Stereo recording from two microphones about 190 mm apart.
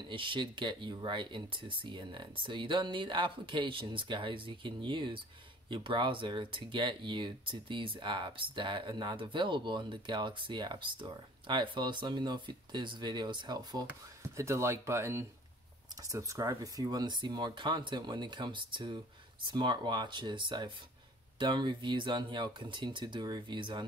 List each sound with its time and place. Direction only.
0.1 s speech: 25° right (ahead or behind)